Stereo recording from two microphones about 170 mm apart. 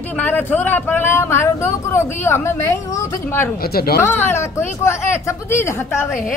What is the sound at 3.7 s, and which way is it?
Speech, 65° left (ahead or behind).